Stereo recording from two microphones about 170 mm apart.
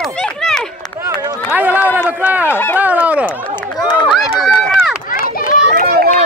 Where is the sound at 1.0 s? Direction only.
15° right (ahead or behind).